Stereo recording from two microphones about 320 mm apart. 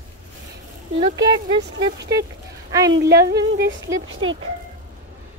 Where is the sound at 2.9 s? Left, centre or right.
Right.